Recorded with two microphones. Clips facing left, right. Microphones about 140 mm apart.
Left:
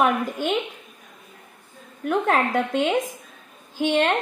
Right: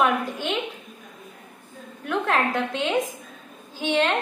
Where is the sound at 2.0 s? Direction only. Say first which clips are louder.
Left 2 dB; 45° left (ahead or behind).